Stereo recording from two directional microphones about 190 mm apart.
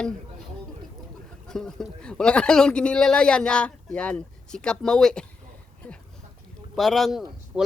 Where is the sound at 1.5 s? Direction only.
Centre (ahead or behind).